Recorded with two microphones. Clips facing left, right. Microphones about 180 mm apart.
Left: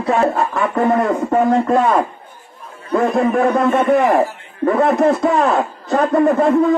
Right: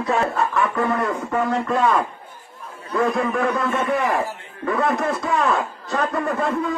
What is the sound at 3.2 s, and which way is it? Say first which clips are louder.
A man's voice: left 7 dB; 45° left (ahead or behind).